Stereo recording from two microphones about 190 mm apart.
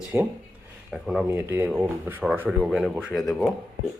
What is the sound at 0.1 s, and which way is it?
Speech, 10° right (ahead or behind).